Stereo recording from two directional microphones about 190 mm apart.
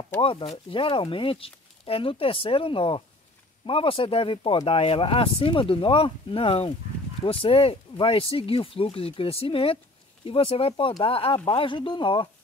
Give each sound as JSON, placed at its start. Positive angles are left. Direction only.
{"t": 0.2, "sound": "speech", "side_deg": 30}